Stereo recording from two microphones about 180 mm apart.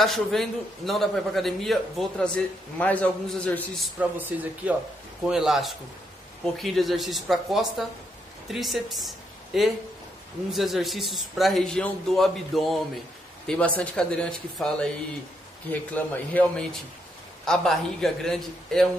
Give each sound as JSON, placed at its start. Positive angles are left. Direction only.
{"t": 0.0, "sound": "a man's voice", "side_deg": 0}
{"t": 13.7, "sound": "a man's voice", "side_deg": 5}